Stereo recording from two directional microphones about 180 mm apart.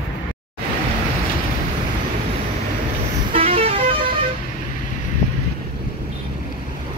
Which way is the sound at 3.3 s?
30° right (ahead or behind).